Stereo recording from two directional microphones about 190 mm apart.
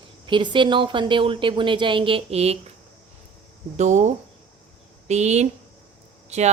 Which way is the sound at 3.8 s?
40° right (ahead or behind).